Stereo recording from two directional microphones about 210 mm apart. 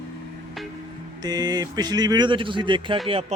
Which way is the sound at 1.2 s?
20° right (ahead or behind).